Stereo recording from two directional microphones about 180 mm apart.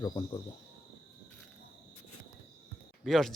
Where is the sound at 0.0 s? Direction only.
25° left (ahead or behind).